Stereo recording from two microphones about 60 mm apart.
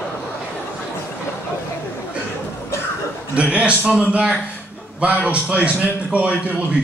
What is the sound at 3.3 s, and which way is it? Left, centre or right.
Speech, right.